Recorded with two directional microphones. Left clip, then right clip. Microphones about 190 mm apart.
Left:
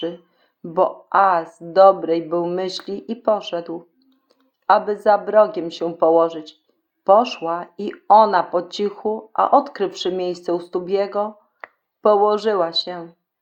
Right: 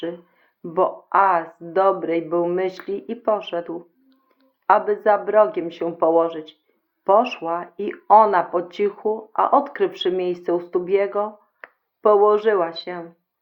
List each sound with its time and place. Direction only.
0.7 s speech: 40° left (ahead or behind)